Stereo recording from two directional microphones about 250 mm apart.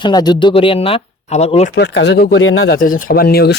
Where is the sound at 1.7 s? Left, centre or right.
Left.